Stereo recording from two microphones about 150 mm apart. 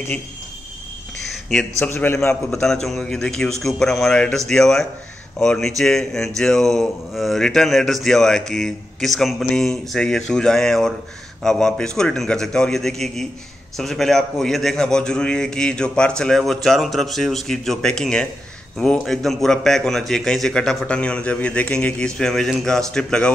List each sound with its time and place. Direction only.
1.3 s a man's voice: centre (ahead or behind)
1.9 s a man's voice: 15° left (ahead or behind)
2.6 s speech: 5° left (ahead or behind)